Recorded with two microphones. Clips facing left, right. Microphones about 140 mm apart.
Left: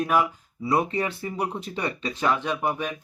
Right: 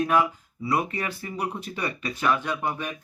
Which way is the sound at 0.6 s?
25° left (ahead or behind).